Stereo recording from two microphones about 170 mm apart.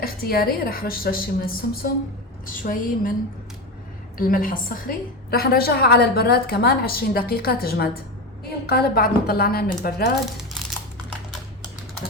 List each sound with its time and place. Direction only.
0.0 s a woman's voice: 60° left (ahead or behind)
4.2 s a woman's voice: 55° left (ahead or behind)